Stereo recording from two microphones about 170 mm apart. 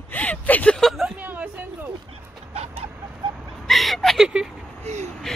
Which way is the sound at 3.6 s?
Centre (ahead or behind).